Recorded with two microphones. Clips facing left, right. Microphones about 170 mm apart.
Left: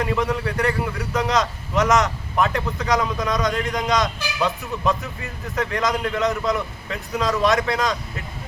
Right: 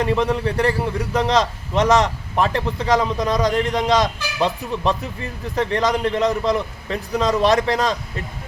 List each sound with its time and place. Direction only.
0.0 s a man's voice: 30° right (ahead or behind)